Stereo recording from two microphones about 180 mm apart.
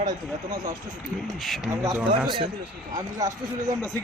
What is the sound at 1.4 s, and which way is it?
Speech, centre (ahead or behind).